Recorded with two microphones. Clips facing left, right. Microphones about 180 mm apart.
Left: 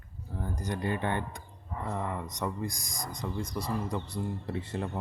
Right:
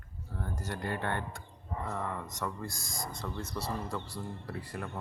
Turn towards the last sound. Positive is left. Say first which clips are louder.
# left 5 dB
turn(degrees=25)  # may be behind; listen again after turning